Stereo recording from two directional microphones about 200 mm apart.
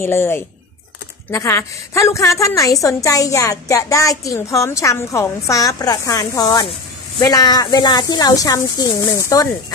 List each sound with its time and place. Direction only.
0.0 s a woman's voice: 10° left (ahead or behind)